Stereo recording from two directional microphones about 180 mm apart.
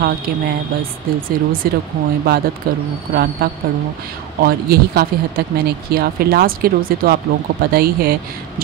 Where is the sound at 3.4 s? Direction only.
55° right (ahead or behind).